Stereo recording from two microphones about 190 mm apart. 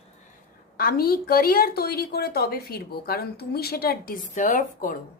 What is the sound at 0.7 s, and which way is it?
A woman's voice, 55° left (ahead or behind).